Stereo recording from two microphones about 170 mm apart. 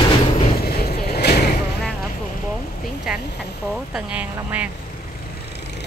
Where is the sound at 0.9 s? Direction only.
75° left (ahead or behind).